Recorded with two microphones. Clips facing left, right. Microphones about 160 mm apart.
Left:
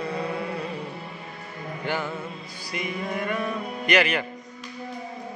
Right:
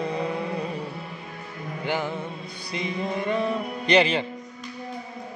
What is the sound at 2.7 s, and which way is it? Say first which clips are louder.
Music: right 2 dB; 25° right (ahead or behind).